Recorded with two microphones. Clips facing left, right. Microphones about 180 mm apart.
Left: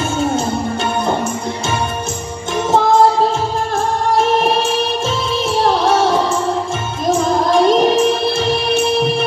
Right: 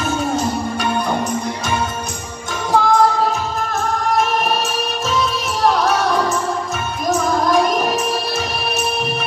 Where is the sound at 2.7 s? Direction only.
25° left (ahead or behind).